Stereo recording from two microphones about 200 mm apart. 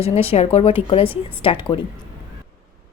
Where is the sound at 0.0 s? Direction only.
30° left (ahead or behind).